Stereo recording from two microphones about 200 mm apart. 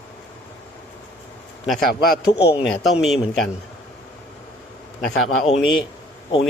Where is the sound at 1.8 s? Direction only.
50° left (ahead or behind).